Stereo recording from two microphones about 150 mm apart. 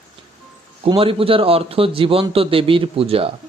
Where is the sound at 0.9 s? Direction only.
40° right (ahead or behind).